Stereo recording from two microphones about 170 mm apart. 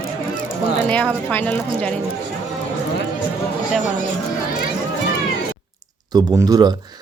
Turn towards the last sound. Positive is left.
turn(degrees=-25)  # may be behind; listen again after turning